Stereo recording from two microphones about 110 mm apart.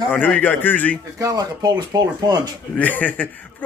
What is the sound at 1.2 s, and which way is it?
Speech, 30° right (ahead or behind).